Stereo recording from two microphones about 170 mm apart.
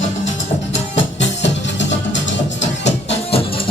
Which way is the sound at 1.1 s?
90° left.